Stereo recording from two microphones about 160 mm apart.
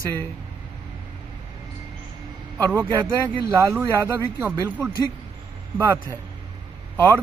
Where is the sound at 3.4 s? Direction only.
20° right (ahead or behind).